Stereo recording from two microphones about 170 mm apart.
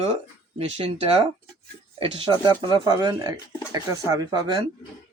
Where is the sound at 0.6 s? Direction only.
35° right (ahead or behind).